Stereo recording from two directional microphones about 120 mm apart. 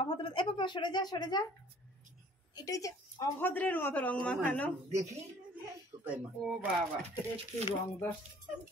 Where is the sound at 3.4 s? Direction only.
15° left (ahead or behind).